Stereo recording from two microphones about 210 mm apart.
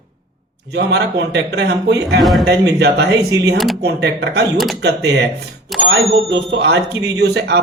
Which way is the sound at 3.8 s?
50° right (ahead or behind).